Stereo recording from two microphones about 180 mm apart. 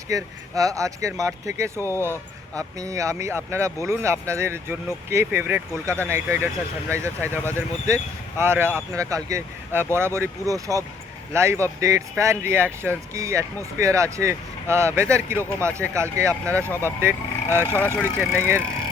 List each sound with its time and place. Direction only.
0.1 s speech: 20° right (ahead or behind)
7.3 s speech: 10° left (ahead or behind)
7.9 s speech: 15° right (ahead or behind)
17.5 s speech: 10° left (ahead or behind)
18.0 s speech: 15° right (ahead or behind)